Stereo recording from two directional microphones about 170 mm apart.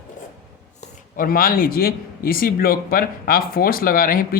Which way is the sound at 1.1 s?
55° left (ahead or behind).